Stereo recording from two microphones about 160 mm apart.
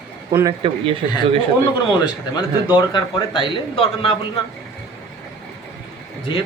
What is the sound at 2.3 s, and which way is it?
A man's voice, 30° left (ahead or behind).